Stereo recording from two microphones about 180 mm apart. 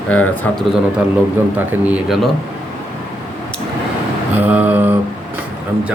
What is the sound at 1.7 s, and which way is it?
Speech, 10° right (ahead or behind).